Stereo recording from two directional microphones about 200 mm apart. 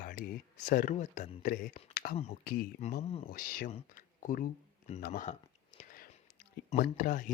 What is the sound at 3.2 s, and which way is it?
Speech, 45° left (ahead or behind).